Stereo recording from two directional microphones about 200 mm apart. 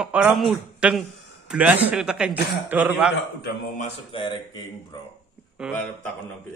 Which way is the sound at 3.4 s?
50° left (ahead or behind).